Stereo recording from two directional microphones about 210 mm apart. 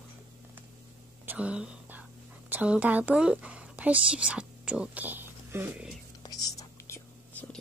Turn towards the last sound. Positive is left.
turn(degrees=10)  # may be behind; listen again after turning